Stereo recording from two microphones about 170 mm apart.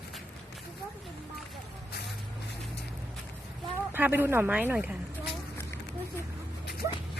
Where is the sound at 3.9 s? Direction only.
10° right (ahead or behind).